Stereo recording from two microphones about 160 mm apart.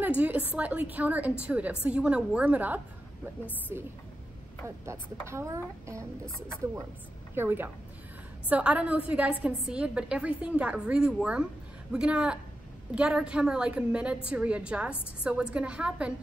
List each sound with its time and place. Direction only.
0.2 s a woman's voice: 10° right (ahead or behind)
7.3 s a woman's voice: 15° right (ahead or behind)